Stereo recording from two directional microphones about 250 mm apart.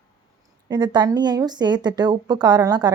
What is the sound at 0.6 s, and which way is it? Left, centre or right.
A woman's voice, centre.